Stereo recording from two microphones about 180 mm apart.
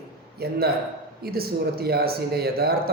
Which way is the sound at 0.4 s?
60° right (ahead or behind).